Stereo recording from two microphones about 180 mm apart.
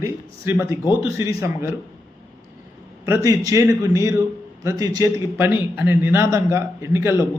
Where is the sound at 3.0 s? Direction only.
15° right (ahead or behind).